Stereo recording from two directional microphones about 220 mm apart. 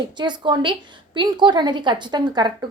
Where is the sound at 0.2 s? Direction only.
20° right (ahead or behind).